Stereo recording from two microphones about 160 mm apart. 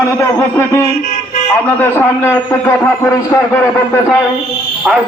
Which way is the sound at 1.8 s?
15° left (ahead or behind).